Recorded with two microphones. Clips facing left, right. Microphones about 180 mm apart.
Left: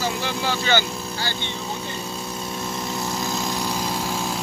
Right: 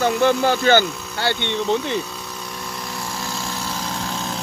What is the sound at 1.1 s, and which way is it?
Speech, 65° right (ahead or behind).